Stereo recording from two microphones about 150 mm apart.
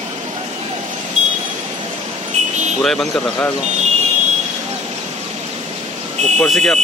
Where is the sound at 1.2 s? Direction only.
55° right (ahead or behind).